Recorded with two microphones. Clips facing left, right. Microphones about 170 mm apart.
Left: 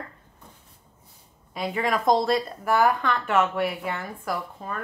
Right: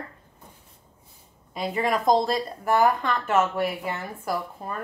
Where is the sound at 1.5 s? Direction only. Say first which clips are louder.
Right 1 dB; centre (ahead or behind).